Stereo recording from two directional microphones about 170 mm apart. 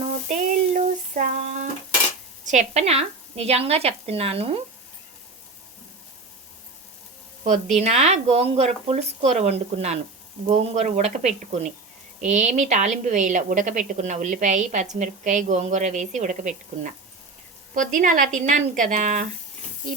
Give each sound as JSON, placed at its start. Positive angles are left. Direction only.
{"t": 0.3, "sound": "a sound", "side_deg": -50}
{"t": 2.5, "sound": "speech", "side_deg": -45}
{"t": 7.8, "sound": "a woman's voice", "side_deg": -40}